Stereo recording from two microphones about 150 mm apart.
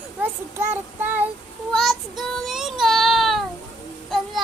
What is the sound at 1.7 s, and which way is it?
Child singing, centre (ahead or behind).